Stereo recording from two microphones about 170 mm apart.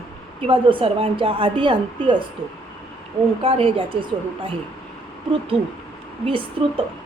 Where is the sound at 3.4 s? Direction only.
35° right (ahead or behind).